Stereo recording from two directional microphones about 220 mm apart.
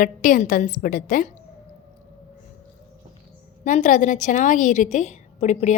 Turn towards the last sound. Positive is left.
turn(degrees=30)  # may be behind; listen again after turning